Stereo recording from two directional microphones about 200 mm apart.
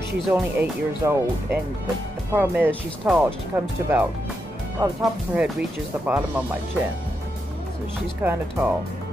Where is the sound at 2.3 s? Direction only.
10° right (ahead or behind).